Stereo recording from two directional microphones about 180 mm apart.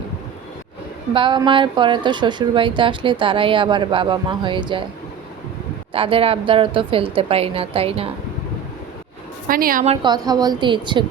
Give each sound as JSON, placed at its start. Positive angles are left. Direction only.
{"t": 1.1, "sound": "a woman's voice", "side_deg": -25}
{"t": 5.9, "sound": "a woman's voice", "side_deg": -30}
{"t": 9.5, "sound": "a woman's voice", "side_deg": -55}
{"t": 9.8, "sound": "a woman's voice", "side_deg": -30}